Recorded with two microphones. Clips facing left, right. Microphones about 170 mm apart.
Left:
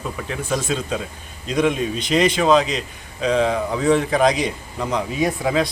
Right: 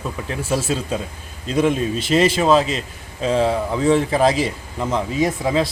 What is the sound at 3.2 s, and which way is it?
Speech, 30° right (ahead or behind).